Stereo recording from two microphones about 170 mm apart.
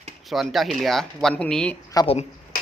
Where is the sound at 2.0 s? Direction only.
20° left (ahead or behind).